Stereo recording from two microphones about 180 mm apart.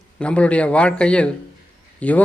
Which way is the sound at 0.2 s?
5° left (ahead or behind).